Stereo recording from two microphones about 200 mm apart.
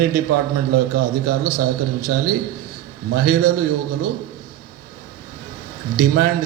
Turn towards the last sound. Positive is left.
turn(degrees=-45)  # may be behind; listen again after turning